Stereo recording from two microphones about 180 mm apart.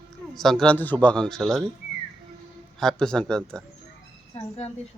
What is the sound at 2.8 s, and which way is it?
Speech, 5° left (ahead or behind).